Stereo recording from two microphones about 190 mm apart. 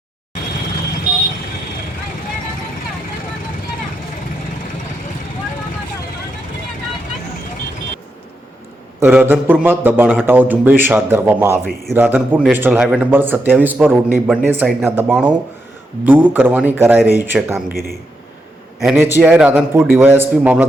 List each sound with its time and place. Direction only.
9.0 s a man's voice: 10° right (ahead or behind)
18.9 s a man's voice: 10° right (ahead or behind)